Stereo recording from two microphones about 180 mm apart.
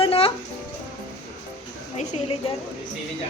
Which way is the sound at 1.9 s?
35° left (ahead or behind).